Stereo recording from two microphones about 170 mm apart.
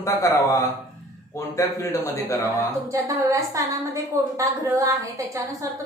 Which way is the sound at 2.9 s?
20° right (ahead or behind).